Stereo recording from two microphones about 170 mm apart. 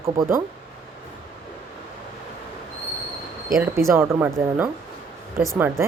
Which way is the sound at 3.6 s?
15° right (ahead or behind).